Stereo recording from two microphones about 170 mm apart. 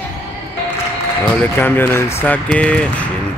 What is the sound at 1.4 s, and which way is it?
Speech, 10° left (ahead or behind).